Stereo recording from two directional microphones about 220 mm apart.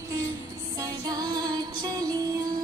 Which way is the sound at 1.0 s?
20° right (ahead or behind).